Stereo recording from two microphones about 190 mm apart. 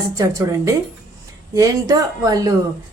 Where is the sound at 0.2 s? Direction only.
15° right (ahead or behind).